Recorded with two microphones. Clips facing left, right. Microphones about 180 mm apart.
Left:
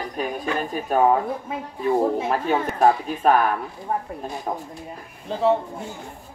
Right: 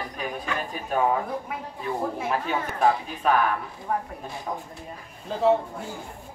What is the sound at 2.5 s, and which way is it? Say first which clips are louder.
Speech: left 5 dB; 45° left (ahead or behind).